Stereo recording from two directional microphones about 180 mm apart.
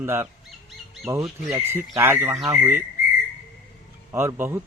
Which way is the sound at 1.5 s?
15° right (ahead or behind).